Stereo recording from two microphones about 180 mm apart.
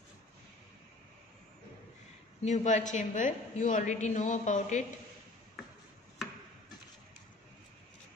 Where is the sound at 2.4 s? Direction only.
40° left (ahead or behind).